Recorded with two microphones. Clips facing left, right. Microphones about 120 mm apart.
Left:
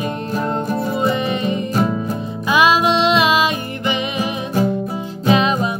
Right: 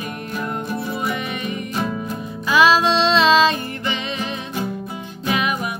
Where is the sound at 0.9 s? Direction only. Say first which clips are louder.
Left 6 dB; 20° left (ahead or behind).